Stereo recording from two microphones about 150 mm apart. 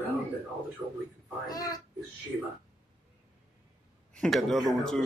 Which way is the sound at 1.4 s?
25° left (ahead or behind).